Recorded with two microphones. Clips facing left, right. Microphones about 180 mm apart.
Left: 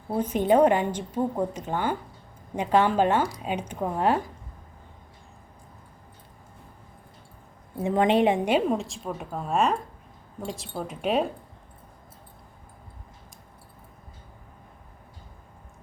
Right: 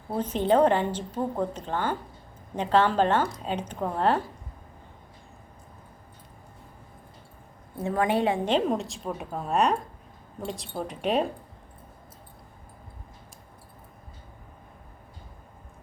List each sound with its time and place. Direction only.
0.1 s a woman's voice: 10° left (ahead or behind)
7.8 s a woman's voice: 20° left (ahead or behind); by 11.3 s centre (ahead or behind)